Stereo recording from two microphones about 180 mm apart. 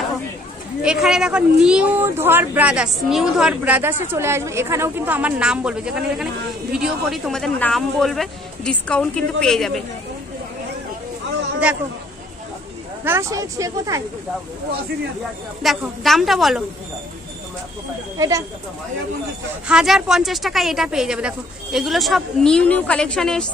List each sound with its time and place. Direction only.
0.8 s a woman's voice: 5° right (ahead or behind)
13.0 s speech: 15° right (ahead or behind)
15.6 s a woman's voice: centre (ahead or behind)
18.1 s speech: 20° right (ahead or behind)
19.7 s a woman's voice: 5° right (ahead or behind)